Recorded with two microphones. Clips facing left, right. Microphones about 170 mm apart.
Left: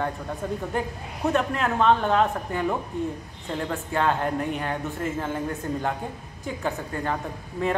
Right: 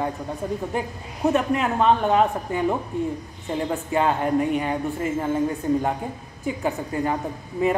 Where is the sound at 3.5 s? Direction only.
15° right (ahead or behind).